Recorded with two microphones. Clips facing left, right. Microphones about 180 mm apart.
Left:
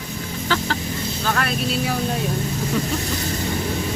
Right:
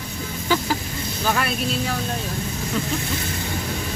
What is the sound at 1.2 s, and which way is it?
Speech, 5° right (ahead or behind).